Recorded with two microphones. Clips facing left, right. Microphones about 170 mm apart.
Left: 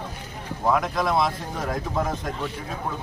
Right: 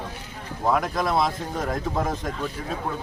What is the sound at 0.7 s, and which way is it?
Speech, centre (ahead or behind).